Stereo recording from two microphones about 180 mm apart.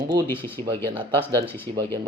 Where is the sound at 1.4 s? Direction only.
15° left (ahead or behind).